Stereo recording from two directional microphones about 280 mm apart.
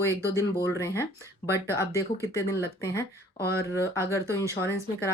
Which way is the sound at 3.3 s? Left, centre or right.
Left.